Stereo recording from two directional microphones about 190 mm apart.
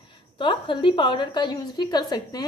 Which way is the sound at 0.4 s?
25° left (ahead or behind).